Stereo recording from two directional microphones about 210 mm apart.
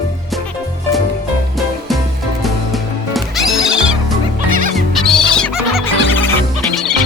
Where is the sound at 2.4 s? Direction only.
Centre (ahead or behind).